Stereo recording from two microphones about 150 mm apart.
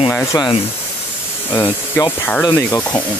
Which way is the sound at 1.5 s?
15° left (ahead or behind).